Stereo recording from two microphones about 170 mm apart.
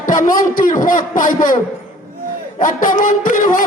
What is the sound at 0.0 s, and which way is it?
A man's voice, 50° left (ahead or behind).